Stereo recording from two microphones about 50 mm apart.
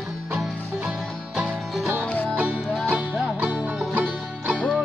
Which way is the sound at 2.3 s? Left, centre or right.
Right.